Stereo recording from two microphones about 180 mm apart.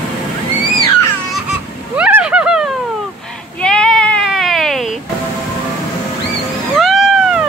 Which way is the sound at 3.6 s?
5° left (ahead or behind).